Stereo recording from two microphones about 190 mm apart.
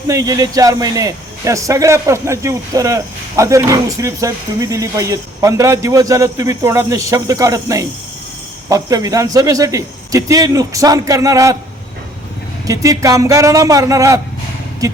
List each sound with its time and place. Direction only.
0.1 s speech: 20° right (ahead or behind)
12.6 s speech: 15° right (ahead or behind)